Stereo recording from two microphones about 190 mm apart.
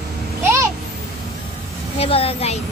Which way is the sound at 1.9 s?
30° left (ahead or behind).